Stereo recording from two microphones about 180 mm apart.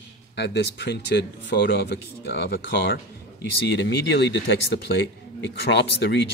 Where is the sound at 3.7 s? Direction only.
70° left (ahead or behind).